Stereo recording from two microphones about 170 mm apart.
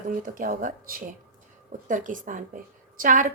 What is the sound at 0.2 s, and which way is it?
A woman's voice, 50° right (ahead or behind).